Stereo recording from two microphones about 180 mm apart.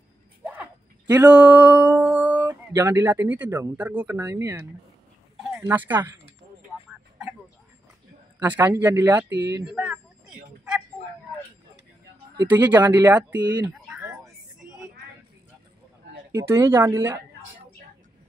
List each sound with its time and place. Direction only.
0.4 s a sound: 10° right (ahead or behind)
1.3 s speech: 10° right (ahead or behind)
5.7 s speech: 10° right (ahead or behind)
6.9 s a sound: 5° right (ahead or behind)
8.4 s speech: 10° right (ahead or behind)
9.4 s speech: 20° right (ahead or behind)
9.7 s a sound: 5° right (ahead or behind)
12.4 s speech: 10° right (ahead or behind)
13.4 s speech: 20° right (ahead or behind)
16.3 s speech: 15° right (ahead or behind)